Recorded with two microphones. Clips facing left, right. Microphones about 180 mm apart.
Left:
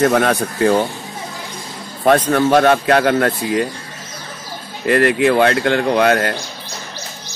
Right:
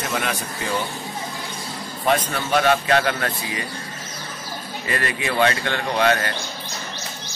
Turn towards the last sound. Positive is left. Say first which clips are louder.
# left 6 dB
turn(degrees=55)  # may be behind; listen again after turning